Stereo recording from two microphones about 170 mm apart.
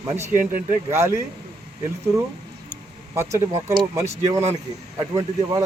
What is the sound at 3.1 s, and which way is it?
Speech, 15° right (ahead or behind).